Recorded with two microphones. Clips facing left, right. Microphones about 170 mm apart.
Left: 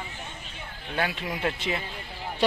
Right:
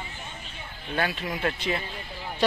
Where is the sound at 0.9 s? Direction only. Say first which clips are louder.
Right 1 dB; 15° left (ahead or behind).